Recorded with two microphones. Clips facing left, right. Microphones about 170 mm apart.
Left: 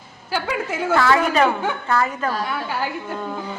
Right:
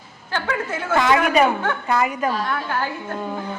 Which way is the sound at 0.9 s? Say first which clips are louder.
Right 1 dB; 20° right (ahead or behind).